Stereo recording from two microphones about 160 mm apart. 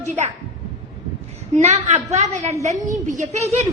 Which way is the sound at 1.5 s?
45° right (ahead or behind).